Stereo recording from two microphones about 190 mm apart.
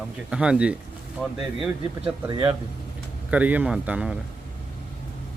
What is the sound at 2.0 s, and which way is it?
Speech, 25° right (ahead or behind).